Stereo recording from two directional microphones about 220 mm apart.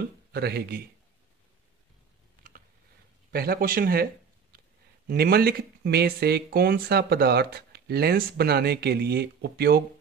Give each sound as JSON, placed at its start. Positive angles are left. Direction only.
{"t": 0.3, "sound": "speech", "side_deg": -45}
{"t": 3.3, "sound": "speech", "side_deg": -45}